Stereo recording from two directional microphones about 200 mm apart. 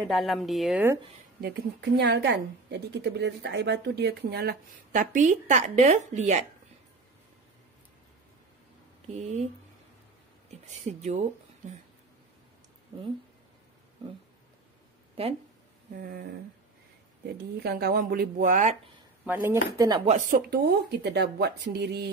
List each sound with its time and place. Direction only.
0.1 s a woman's voice: centre (ahead or behind)
1.4 s a woman's voice: 55° right (ahead or behind); by 6.4 s 35° right (ahead or behind)
9.1 s speech: 35° right (ahead or behind)
10.8 s speech: 35° right (ahead or behind)
15.2 s speech: 30° right (ahead or behind)
16.0 s speech: 50° right (ahead or behind)
17.4 s speech: 50° right (ahead or behind)
19.2 s speech: 10° right (ahead or behind)
20.1 s a woman's voice: 40° right (ahead or behind)